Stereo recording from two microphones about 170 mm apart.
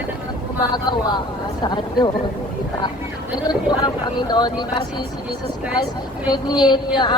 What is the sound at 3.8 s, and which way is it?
Speech, 25° left (ahead or behind).